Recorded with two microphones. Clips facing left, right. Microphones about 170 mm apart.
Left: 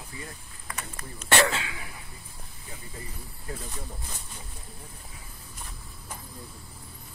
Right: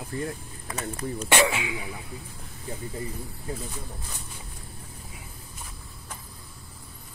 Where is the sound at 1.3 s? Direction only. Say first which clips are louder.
Right 1 dB; 15° right (ahead or behind).